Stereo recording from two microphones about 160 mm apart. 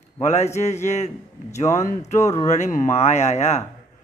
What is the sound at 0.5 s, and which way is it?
A man's voice, 45° left (ahead or behind).